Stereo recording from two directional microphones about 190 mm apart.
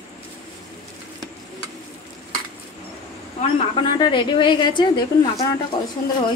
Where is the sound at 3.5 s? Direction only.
25° left (ahead or behind).